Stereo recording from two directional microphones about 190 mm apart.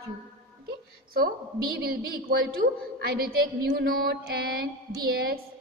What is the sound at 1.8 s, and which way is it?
A woman's voice, 55° right (ahead or behind).